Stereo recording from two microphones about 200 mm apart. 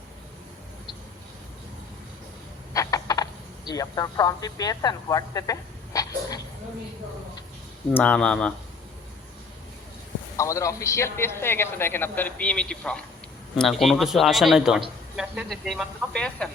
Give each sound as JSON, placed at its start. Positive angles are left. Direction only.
{"t": 2.7, "sound": "a sound", "side_deg": 15}
{"t": 7.9, "sound": "speech", "side_deg": 5}
{"t": 10.3, "sound": "a man's voice", "side_deg": 15}